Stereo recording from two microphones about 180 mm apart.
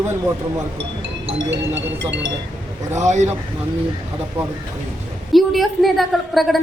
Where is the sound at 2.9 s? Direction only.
40° right (ahead or behind).